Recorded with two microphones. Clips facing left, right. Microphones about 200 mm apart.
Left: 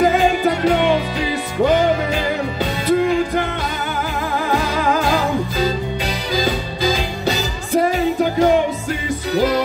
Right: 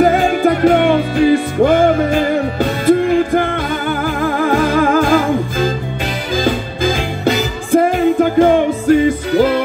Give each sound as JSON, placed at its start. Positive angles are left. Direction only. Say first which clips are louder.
{"t": 0.0, "sound": "music", "louder": "right 3 dB", "side_deg": -50}